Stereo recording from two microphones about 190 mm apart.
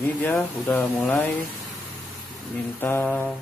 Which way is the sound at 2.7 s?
15° left (ahead or behind).